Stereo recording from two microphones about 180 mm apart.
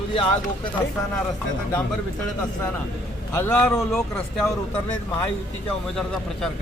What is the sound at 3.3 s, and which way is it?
A man's voice, 10° left (ahead or behind).